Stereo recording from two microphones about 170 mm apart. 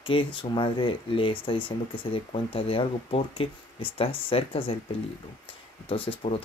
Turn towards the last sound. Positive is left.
turn(degrees=35)  # may be behind; listen again after turning